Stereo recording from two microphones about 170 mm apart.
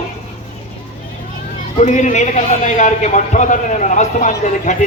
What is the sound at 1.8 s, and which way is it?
A man's voice, 45° left (ahead or behind).